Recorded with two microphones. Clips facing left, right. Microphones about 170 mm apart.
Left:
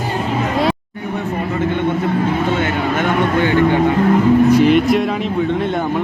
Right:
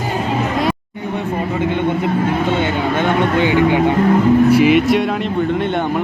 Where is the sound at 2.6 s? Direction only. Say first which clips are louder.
Right 1 dB; 20° right (ahead or behind).